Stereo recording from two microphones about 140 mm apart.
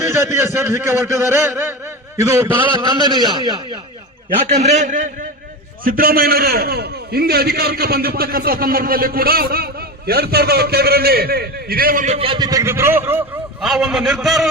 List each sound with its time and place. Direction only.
0.0 s a man's voice: 20° right (ahead or behind)
2.6 s a man's voice: 35° right (ahead or behind)
4.4 s a man's voice: 50° right (ahead or behind)
5.8 s a man's voice: 90° right
12.1 s a man's voice: 40° right (ahead or behind)
12.4 s a man's voice: 25° right (ahead or behind)
13.6 s a man's voice: 5° right (ahead or behind)